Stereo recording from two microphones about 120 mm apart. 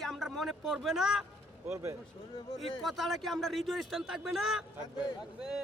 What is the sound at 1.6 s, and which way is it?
Speech, 25° right (ahead or behind).